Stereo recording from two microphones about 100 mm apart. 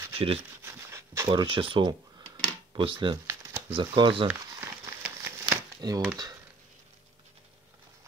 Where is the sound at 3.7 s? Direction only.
55° right (ahead or behind).